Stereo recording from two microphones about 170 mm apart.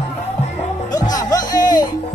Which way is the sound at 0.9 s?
20° left (ahead or behind).